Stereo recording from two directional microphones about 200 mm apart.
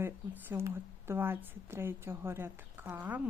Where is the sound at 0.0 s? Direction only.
10° right (ahead or behind).